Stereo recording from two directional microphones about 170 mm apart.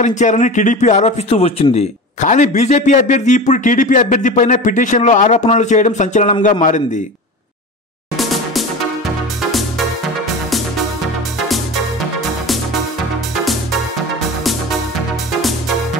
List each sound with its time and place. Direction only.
0.0 s a man's voice: 45° left (ahead or behind)
8.2 s music: centre (ahead or behind)